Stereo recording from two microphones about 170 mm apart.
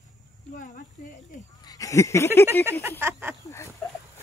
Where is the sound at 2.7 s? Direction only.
15° right (ahead or behind).